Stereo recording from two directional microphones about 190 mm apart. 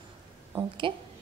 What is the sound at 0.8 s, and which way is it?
Speech, 25° right (ahead or behind).